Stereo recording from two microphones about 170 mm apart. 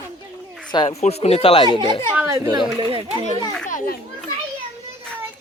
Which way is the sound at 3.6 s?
55° left (ahead or behind).